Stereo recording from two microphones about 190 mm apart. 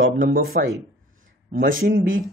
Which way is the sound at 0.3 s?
50° right (ahead or behind).